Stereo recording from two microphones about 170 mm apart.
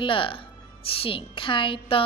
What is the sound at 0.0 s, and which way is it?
A woman's voice, 30° left (ahead or behind).